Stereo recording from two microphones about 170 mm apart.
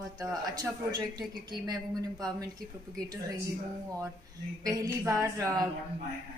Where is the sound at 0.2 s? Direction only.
25° right (ahead or behind).